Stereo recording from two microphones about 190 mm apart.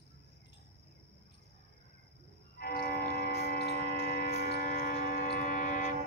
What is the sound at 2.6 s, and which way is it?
Music, 55° left (ahead or behind).